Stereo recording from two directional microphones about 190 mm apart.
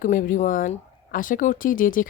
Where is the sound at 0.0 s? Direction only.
45° left (ahead or behind).